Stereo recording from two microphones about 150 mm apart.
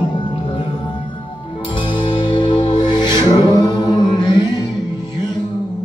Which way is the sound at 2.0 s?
30° left (ahead or behind).